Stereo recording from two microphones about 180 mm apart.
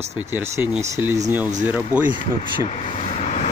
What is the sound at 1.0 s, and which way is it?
Speech, 15° right (ahead or behind).